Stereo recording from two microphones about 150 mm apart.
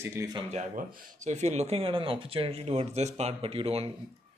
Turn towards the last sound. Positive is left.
turn(degrees=-40)  # may be behind; listen again after turning